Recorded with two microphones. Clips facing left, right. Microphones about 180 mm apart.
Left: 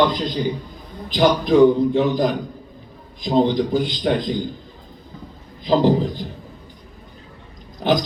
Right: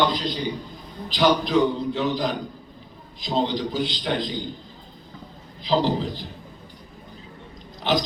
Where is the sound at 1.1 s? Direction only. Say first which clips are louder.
Left 4 dB; 50° left (ahead or behind).